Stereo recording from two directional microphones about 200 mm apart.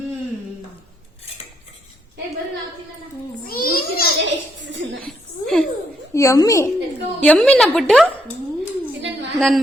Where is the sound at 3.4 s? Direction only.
45° left (ahead or behind).